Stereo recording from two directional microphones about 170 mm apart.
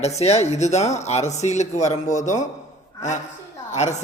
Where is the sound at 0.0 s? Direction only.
40° left (ahead or behind).